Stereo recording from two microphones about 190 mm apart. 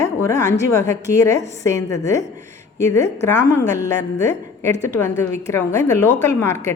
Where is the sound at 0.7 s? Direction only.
15° left (ahead or behind).